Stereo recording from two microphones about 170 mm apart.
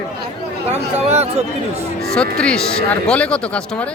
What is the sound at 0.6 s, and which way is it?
Speech, 40° right (ahead or behind).